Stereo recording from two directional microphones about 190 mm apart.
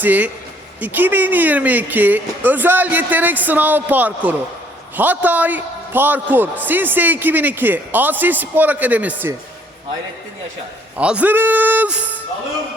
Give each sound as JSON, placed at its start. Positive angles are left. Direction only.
{"t": 0.0, "sound": "a man's voice", "side_deg": -10}
{"t": 10.9, "sound": "a man's voice", "side_deg": -5}